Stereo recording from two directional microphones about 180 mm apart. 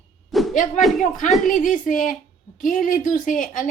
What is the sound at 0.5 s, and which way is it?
A woman's voice, 45° left (ahead or behind).